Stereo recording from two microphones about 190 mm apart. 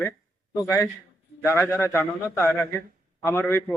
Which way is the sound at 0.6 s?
15° left (ahead or behind).